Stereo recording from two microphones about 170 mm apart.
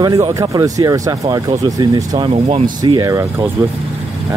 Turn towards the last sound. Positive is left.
turn(degrees=-20)  # may be behind; listen again after turning